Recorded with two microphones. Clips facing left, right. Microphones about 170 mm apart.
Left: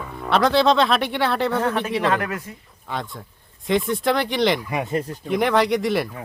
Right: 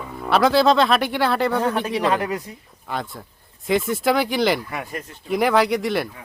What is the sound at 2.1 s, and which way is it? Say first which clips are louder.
Speech: right 1 dB; 15° right (ahead or behind).